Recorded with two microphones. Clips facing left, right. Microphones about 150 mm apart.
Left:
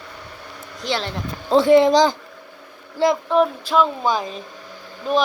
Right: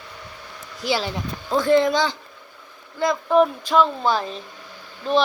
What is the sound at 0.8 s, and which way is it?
Speech, 5° right (ahead or behind).